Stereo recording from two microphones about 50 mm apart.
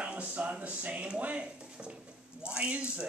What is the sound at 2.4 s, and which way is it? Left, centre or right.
Speech, right.